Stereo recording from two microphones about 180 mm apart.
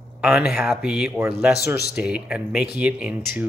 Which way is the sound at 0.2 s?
5° right (ahead or behind).